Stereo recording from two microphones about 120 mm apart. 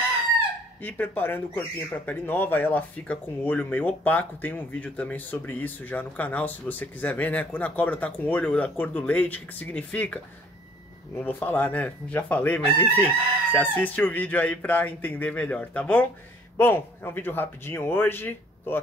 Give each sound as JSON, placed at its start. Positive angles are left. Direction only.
{"t": 0.8, "sound": "speech", "side_deg": 15}
{"t": 11.2, "sound": "speech", "side_deg": 15}